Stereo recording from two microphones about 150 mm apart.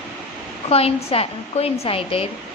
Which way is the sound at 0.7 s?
40° left (ahead or behind).